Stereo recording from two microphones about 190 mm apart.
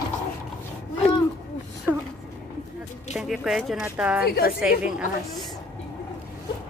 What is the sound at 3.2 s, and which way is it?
Speech, centre (ahead or behind).